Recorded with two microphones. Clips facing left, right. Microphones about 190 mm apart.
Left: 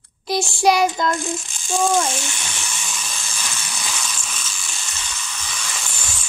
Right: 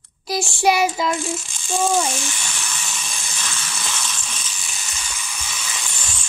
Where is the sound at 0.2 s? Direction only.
Centre (ahead or behind).